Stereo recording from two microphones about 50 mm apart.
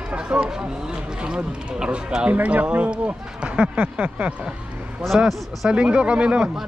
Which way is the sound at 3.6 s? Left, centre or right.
Right.